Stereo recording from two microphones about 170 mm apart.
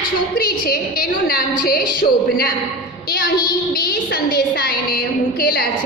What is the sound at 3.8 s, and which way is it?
A woman's voice, 60° left (ahead or behind).